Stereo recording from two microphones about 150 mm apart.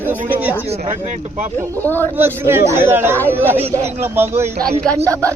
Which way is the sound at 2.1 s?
15° right (ahead or behind).